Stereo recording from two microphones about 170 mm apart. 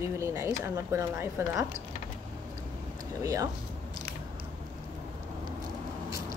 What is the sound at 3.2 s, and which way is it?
Speech, 20° right (ahead or behind).